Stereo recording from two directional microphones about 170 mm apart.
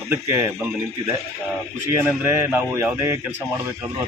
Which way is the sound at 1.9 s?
15° right (ahead or behind).